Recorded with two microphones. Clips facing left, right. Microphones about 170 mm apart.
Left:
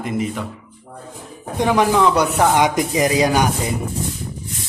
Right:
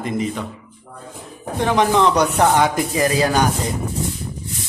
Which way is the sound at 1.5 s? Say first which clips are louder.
Left 1 dB; 10° left (ahead or behind).